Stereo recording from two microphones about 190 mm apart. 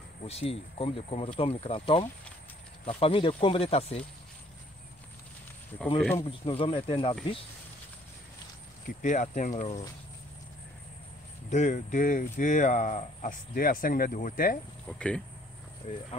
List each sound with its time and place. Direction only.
0.2 s speech: 30° left (ahead or behind)
6.1 s speech: 30° left (ahead or behind)
8.8 s speech: 40° left (ahead or behind)
11.5 s speech: 40° left (ahead or behind)
14.9 s speech: 5° left (ahead or behind)